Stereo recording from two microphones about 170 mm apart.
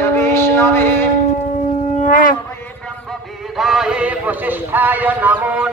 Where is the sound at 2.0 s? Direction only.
50° left (ahead or behind).